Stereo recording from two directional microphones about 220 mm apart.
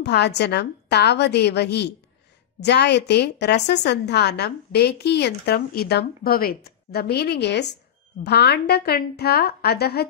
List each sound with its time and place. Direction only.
0.0 s a woman's voice: 50° left (ahead or behind)